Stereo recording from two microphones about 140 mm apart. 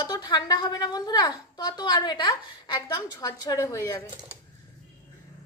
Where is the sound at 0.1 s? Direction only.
30° left (ahead or behind).